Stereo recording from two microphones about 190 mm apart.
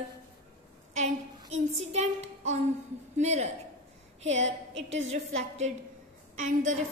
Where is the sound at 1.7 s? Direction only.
35° right (ahead or behind).